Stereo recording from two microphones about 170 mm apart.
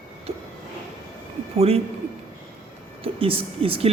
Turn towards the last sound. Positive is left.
turn(degrees=-35)  # may be behind; listen again after turning